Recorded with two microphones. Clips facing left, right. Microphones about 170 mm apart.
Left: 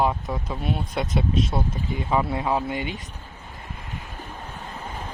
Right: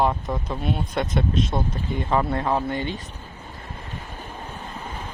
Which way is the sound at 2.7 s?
15° left (ahead or behind).